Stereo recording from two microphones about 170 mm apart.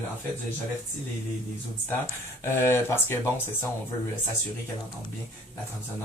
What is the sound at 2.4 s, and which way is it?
Speech, 15° left (ahead or behind).